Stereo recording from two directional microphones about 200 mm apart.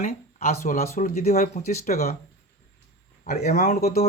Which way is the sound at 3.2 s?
35° left (ahead or behind).